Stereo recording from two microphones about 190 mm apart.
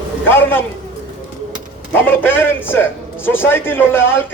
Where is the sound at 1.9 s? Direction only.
10° left (ahead or behind).